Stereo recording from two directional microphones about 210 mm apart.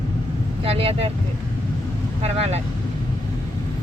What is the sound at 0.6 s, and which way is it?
Speech, 25° right (ahead or behind).